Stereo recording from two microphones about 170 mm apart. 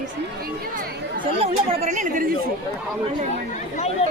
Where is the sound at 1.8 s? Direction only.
45° right (ahead or behind).